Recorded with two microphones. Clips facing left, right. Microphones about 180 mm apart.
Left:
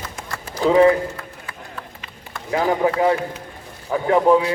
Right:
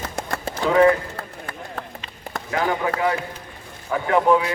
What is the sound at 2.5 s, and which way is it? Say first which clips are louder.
Speech: left 4 dB; 30° left (ahead or behind).